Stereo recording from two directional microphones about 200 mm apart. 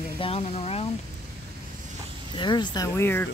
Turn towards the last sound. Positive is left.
turn(degrees=10)  # may be behind; listen again after turning